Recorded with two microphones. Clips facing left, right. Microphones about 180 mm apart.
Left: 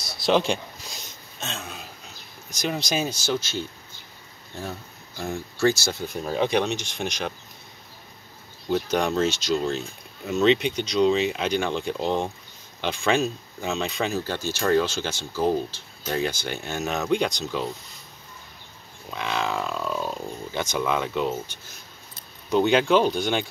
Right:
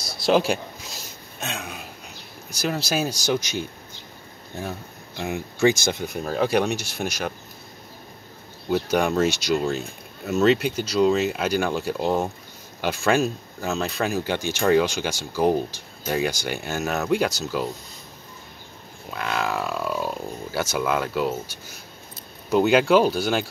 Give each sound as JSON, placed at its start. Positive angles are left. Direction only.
{"t": 0.0, "sound": "a sound", "side_deg": 0}
{"t": 1.4, "sound": "speech", "side_deg": -10}
{"t": 6.1, "sound": "speech", "side_deg": -5}
{"t": 8.6, "sound": "speech", "side_deg": -10}
{"t": 14.2, "sound": "speech", "side_deg": -15}
{"t": 19.0, "sound": "speech", "side_deg": -5}